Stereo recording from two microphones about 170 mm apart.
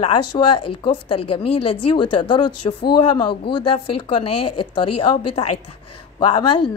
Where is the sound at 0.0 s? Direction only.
30° left (ahead or behind).